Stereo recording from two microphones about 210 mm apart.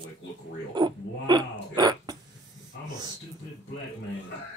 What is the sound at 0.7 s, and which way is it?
Speech, 20° right (ahead or behind).